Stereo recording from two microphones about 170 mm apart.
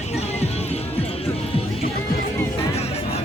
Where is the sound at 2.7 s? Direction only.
35° left (ahead or behind).